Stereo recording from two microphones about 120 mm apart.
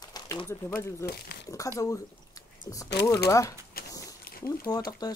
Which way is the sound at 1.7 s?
30° left (ahead or behind).